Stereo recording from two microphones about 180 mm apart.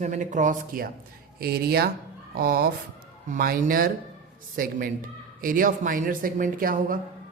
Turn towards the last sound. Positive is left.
turn(degrees=-50)  # may be behind; listen again after turning